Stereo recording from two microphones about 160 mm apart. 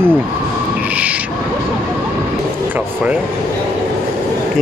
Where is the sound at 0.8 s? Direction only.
10° right (ahead or behind).